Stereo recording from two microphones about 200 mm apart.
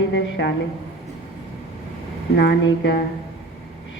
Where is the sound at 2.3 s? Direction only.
60° left (ahead or behind).